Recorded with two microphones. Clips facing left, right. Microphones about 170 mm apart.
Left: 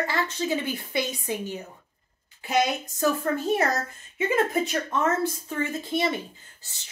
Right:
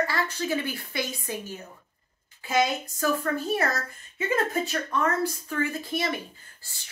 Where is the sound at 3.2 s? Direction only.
20° left (ahead or behind).